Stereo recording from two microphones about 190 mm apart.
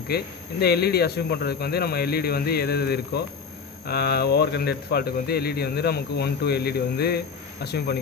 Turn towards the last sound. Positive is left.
turn(degrees=60)  # may be behind; listen again after turning